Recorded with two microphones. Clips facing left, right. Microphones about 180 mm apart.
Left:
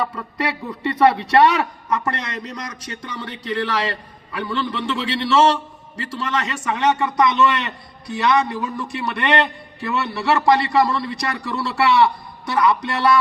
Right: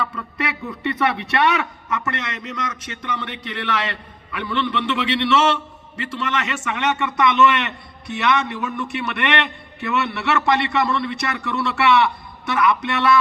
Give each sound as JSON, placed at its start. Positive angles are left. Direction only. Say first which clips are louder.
{"t": 0.2, "sound": "a man's voice", "louder": "left 2 dB", "side_deg": 30}